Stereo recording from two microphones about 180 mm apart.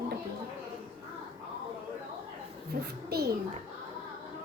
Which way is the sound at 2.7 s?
55° right (ahead or behind).